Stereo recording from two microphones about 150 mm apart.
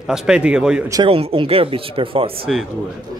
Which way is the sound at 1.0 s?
35° right (ahead or behind).